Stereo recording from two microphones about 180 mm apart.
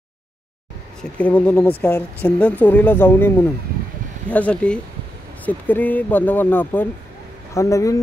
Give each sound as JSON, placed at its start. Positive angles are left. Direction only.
{"t": 1.0, "sound": "speech", "side_deg": 5}